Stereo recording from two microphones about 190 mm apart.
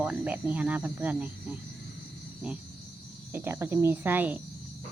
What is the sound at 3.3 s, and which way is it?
Speech, 10° right (ahead or behind).